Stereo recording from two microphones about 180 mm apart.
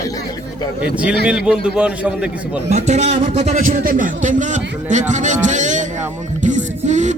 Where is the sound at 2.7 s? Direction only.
40° right (ahead or behind).